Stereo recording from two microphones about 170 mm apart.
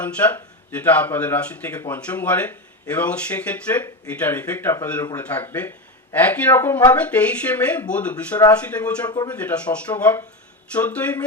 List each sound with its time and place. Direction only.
0.0 s speech: 10° left (ahead or behind)
9.0 s speech: 25° left (ahead or behind)
9.3 s speech: 10° left (ahead or behind)